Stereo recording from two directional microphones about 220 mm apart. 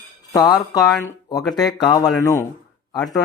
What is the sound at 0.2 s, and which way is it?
Speech, 15° left (ahead or behind).